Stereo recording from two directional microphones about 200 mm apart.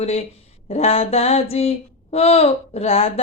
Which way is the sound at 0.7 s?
30° left (ahead or behind).